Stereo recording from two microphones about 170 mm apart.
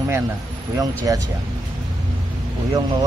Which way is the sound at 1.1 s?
20° right (ahead or behind).